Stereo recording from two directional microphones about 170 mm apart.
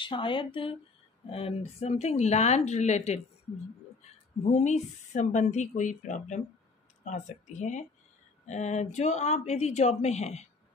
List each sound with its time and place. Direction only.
0.0 s speech: 30° left (ahead or behind)
4.4 s speech: 40° left (ahead or behind)